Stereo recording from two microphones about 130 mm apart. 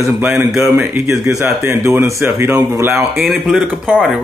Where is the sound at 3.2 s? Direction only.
5° right (ahead or behind).